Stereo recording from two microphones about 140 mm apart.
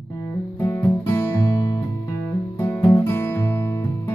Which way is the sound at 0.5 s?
20° left (ahead or behind).